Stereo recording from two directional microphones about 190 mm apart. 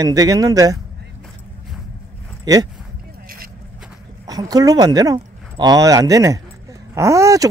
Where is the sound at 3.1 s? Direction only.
50° right (ahead or behind).